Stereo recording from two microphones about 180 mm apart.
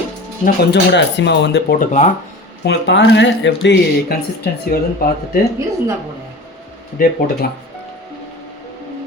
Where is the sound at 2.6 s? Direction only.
70° left (ahead or behind).